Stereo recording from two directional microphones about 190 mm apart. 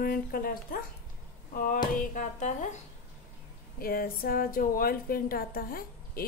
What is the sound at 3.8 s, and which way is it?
A woman's voice, 50° left (ahead or behind).